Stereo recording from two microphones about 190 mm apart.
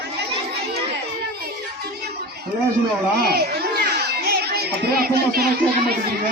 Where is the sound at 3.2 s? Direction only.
55° right (ahead or behind).